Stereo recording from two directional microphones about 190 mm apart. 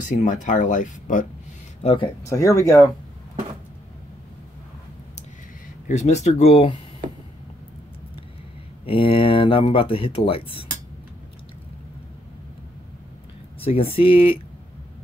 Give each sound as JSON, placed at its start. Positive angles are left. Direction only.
{"t": 0.1, "sound": "speech", "side_deg": 40}
{"t": 1.8, "sound": "speech", "side_deg": 30}
{"t": 2.2, "sound": "speech", "side_deg": 15}
{"t": 5.9, "sound": "speech", "side_deg": 35}
{"t": 8.8, "sound": "speech", "side_deg": 30}
{"t": 13.6, "sound": "speech", "side_deg": 30}